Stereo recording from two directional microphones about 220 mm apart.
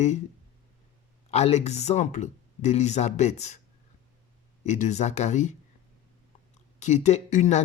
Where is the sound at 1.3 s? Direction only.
30° left (ahead or behind).